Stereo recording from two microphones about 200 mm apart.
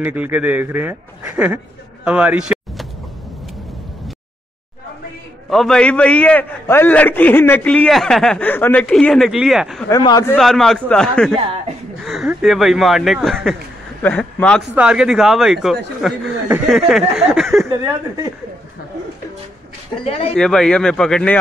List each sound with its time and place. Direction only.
0.0 s speech: 10° right (ahead or behind)
2.0 s a sound: 5° right (ahead or behind)
5.5 s a man's voice: centre (ahead or behind)
9.8 s a man's voice: 15° left (ahead or behind)
10.3 s a man's voice: centre (ahead or behind)
20.3 s a man's voice: centre (ahead or behind)